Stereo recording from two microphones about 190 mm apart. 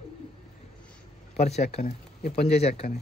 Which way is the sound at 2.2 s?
55° left (ahead or behind).